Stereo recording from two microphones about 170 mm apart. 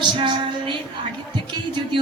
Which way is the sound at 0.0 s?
30° right (ahead or behind).